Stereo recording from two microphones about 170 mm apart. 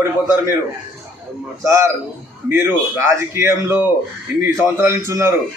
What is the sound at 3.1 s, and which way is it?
A man's voice, 15° right (ahead or behind).